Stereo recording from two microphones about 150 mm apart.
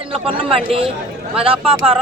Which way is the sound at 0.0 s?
35° right (ahead or behind).